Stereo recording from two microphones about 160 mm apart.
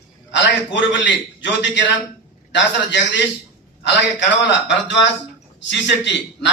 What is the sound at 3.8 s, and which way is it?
Speech, 90° left.